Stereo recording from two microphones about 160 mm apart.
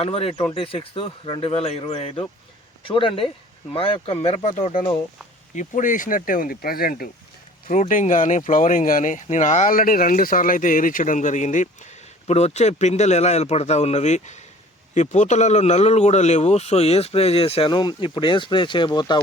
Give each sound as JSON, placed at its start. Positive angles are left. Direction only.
{"t": 0.0, "sound": "speech", "side_deg": 35}
{"t": 5.5, "sound": "speech", "side_deg": 55}
{"t": 7.7, "sound": "a man's voice", "side_deg": 55}